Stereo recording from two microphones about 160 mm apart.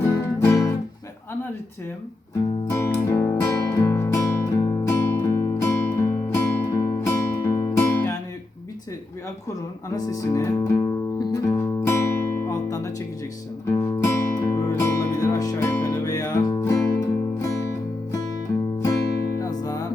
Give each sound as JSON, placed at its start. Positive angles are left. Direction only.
{"t": 0.0, "sound": "music", "side_deg": 15}
{"t": 2.6, "sound": "music", "side_deg": 15}
{"t": 9.9, "sound": "music", "side_deg": 20}
{"t": 19.4, "sound": "music", "side_deg": 20}